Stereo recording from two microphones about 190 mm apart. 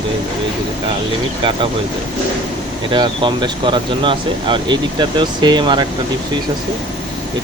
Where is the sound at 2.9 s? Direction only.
25° right (ahead or behind).